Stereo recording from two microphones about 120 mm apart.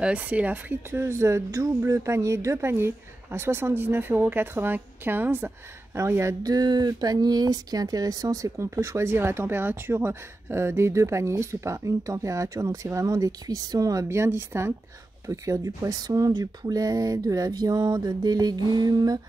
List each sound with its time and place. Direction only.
0.0 s speech: 10° right (ahead or behind); by 19.2 s 35° right (ahead or behind)